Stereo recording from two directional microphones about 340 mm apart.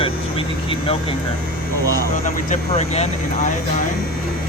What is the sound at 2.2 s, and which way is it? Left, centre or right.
Speech, centre.